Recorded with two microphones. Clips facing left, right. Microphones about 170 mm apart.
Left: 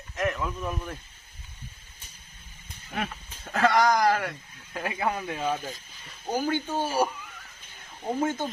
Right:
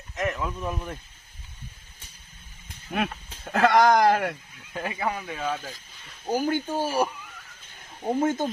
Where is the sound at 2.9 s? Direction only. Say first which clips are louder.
Right 5 dB; 65° right (ahead or behind).